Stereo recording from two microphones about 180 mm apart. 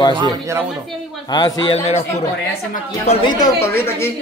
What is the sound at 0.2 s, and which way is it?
Speech, 20° right (ahead or behind).